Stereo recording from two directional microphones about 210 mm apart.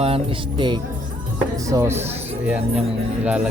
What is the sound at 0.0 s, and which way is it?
Speech, 25° right (ahead or behind).